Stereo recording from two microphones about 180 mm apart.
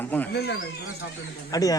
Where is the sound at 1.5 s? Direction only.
20° left (ahead or behind).